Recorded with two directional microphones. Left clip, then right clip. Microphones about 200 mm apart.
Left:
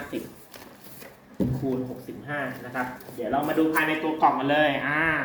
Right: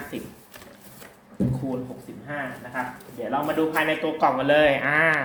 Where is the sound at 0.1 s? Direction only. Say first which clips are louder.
Left 3 dB; 35° right (ahead or behind).